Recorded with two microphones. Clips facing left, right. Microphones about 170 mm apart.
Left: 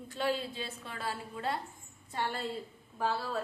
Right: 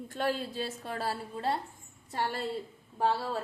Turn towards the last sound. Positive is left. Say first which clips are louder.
# right 4 dB
turn(degrees=-30)  # may be behind; listen again after turning